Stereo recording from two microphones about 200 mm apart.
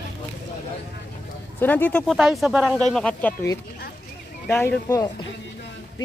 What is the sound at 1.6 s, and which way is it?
Speech, 10° left (ahead or behind).